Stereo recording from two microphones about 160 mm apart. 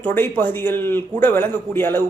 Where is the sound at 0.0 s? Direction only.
15° left (ahead or behind).